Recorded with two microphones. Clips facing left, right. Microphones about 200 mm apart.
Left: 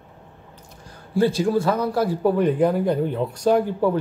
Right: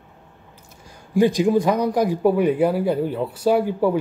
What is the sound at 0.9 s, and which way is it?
A man's voice, 15° right (ahead or behind).